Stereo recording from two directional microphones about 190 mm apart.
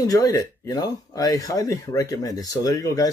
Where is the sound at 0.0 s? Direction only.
20° left (ahead or behind).